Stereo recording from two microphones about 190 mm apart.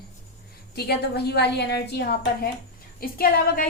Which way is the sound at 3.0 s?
50° left (ahead or behind).